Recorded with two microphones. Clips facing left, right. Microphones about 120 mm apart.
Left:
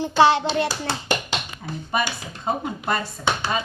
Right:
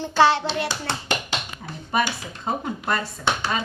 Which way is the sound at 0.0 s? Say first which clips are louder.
Left 2 dB; 15° left (ahead or behind).